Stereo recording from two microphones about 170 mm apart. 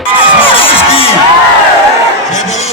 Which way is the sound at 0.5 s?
30° left (ahead or behind).